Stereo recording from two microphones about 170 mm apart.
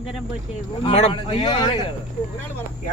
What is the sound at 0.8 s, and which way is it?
Speech, 35° left (ahead or behind).